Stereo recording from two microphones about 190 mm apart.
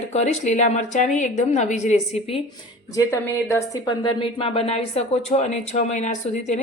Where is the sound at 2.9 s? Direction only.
15° left (ahead or behind).